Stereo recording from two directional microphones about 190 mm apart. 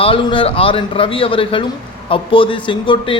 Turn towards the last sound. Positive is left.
turn(degrees=25)  # may be behind; listen again after turning